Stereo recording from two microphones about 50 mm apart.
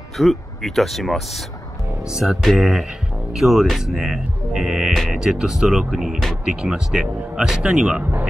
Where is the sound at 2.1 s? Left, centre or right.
Centre.